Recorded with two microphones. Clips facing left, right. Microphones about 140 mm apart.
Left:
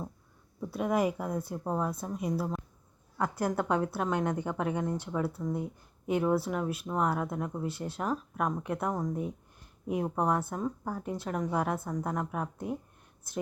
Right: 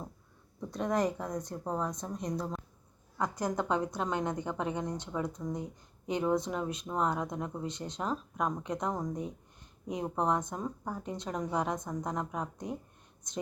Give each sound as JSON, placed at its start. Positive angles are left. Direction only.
{"t": 0.6, "sound": "a woman's voice", "side_deg": 5}
{"t": 11.5, "sound": "a woman's voice", "side_deg": -15}
{"t": 11.8, "sound": "speech", "side_deg": 5}